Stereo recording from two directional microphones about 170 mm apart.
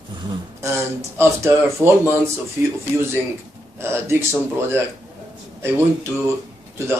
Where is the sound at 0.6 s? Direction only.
15° right (ahead or behind).